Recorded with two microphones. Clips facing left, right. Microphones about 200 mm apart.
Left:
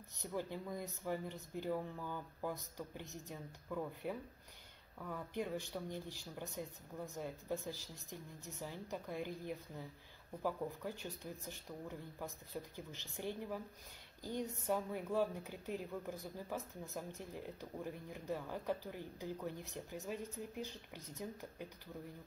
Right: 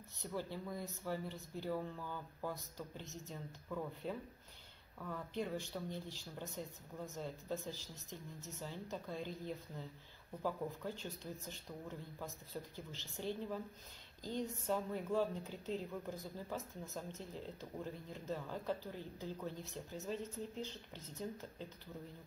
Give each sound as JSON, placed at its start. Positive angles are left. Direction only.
{"t": 0.2, "sound": "a woman's voice", "side_deg": 15}